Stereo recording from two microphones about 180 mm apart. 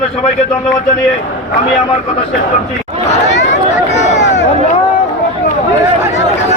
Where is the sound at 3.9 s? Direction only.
40° left (ahead or behind).